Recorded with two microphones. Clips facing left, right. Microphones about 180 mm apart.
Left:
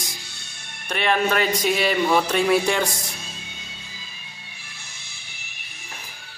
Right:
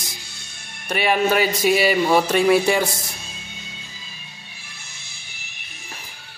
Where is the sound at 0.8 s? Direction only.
5° right (ahead or behind).